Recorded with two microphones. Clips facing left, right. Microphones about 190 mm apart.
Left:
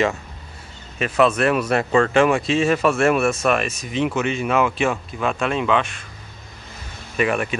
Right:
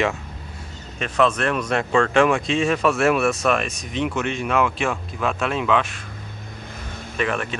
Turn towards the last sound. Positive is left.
turn(degrees=10)  # may be behind; listen again after turning